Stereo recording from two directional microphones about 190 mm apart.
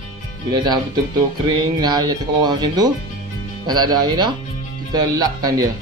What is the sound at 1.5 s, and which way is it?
Speech, 20° right (ahead or behind).